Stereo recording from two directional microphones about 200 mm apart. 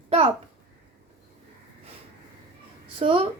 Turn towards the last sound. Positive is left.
turn(degrees=-30)  # may be behind; listen again after turning